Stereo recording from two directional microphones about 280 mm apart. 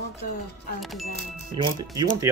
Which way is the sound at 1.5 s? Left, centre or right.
Centre.